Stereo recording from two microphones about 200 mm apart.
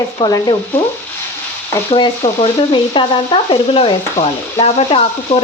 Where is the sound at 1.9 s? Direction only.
25° left (ahead or behind).